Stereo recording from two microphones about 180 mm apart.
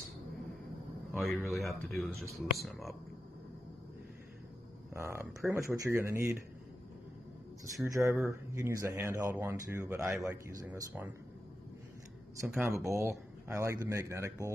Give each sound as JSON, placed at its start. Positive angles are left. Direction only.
{"t": 1.1, "sound": "speech", "side_deg": 0}
{"t": 4.9, "sound": "speech", "side_deg": -15}
{"t": 7.7, "sound": "speech", "side_deg": -15}
{"t": 12.4, "sound": "speech", "side_deg": -15}